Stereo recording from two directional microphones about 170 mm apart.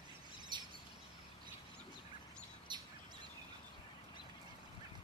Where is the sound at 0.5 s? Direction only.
25° right (ahead or behind).